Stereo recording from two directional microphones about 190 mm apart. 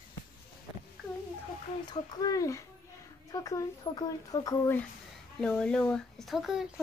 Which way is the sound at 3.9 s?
20° left (ahead or behind).